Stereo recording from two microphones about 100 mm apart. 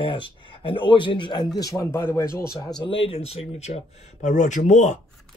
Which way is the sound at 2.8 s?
60° left (ahead or behind).